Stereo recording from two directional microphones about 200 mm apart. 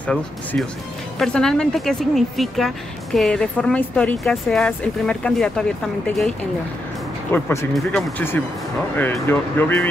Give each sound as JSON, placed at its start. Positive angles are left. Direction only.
{"t": 0.0, "sound": "speech", "side_deg": 5}
{"t": 7.3, "sound": "speech", "side_deg": 10}